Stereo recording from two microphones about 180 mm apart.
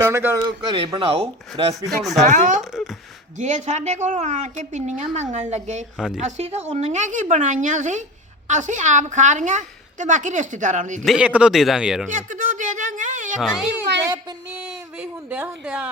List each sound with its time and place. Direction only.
0.0 s speech: 15° right (ahead or behind)
0.7 s a woman's voice: 25° right (ahead or behind)
1.9 s speech: centre (ahead or behind)
2.2 s a woman's voice: 45° right (ahead or behind)
2.6 s speech: centre (ahead or behind)
3.3 s a woman's voice: 40° right (ahead or behind)
11.0 s speech: 5° right (ahead or behind)
12.1 s a sound: 45° right (ahead or behind)
14.5 s speech: 5° right (ahead or behind)